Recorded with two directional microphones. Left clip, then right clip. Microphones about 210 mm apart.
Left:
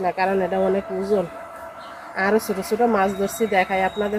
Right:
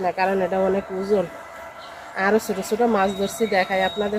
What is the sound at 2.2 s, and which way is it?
A woman's voice, 5° left (ahead or behind).